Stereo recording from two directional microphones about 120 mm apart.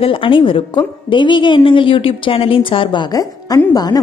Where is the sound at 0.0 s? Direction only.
45° left (ahead or behind).